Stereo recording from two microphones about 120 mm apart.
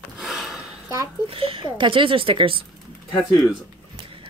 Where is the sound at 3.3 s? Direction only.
Centre (ahead or behind).